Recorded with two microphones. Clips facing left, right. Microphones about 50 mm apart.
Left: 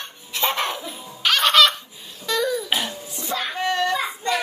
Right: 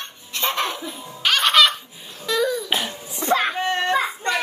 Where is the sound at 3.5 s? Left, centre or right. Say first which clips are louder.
Right 1 dB; right.